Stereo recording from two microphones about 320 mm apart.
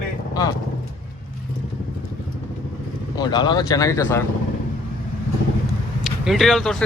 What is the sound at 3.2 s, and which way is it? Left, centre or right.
Speech, centre.